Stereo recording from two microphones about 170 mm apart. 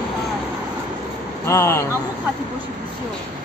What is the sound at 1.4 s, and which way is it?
Speech, 15° left (ahead or behind).